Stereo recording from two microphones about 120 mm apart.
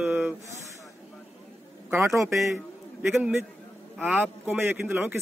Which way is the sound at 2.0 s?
25° right (ahead or behind).